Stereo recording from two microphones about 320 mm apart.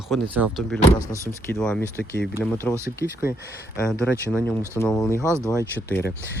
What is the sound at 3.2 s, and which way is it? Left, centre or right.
Speech, left.